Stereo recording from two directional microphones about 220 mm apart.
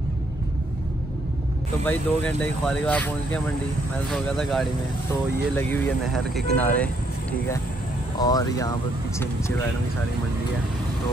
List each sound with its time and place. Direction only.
1.9 s speech: 5° left (ahead or behind)
8.2 s speech: 15° left (ahead or behind)